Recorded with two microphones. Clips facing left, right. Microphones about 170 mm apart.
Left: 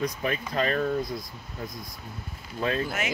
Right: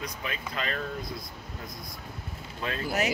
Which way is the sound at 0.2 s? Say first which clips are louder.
Left 7 dB; 40° left (ahead or behind).